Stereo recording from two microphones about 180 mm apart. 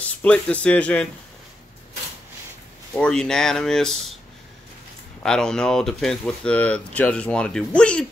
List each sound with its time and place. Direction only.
0.0 s speech: 5° left (ahead or behind)
2.9 s speech: 5° left (ahead or behind)
5.2 s speech: 5° left (ahead or behind)